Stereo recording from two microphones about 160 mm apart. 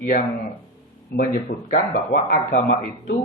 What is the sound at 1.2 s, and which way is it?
Speech, 65° left (ahead or behind).